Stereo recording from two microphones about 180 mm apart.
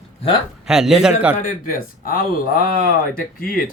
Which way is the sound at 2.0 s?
55° left (ahead or behind).